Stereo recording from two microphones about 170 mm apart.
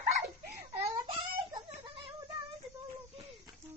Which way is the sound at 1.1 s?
25° right (ahead or behind).